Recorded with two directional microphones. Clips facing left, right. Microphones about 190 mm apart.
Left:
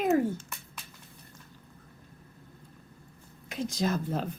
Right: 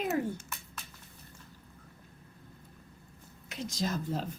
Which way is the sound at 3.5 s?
50° left (ahead or behind).